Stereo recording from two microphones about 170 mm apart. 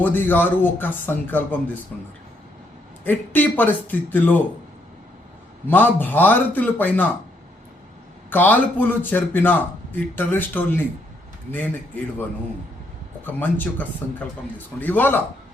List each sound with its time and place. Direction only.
0.0 s a man's voice: 10° left (ahead or behind)
3.0 s a man's voice: 10° left (ahead or behind)
5.6 s a man's voice: 10° left (ahead or behind)
8.3 s a man's voice: 10° left (ahead or behind)
13.2 s a man's voice: 10° left (ahead or behind)